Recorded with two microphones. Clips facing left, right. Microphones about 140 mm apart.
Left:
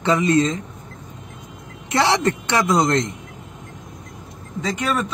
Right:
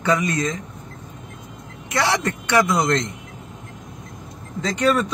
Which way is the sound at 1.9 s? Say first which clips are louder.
Left 3 dB; 25° left (ahead or behind).